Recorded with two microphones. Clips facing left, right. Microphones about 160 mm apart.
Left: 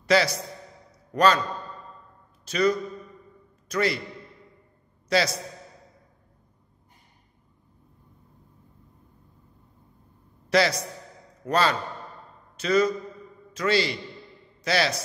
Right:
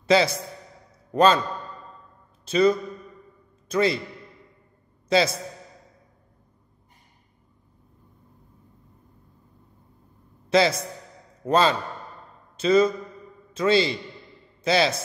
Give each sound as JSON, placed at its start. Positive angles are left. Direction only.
{"t": 0.0, "sound": "a man's voice", "side_deg": -25}
{"t": 2.4, "sound": "a man's voice", "side_deg": -25}
{"t": 5.1, "sound": "a man's voice", "side_deg": -25}
{"t": 10.5, "sound": "a man's voice", "side_deg": -25}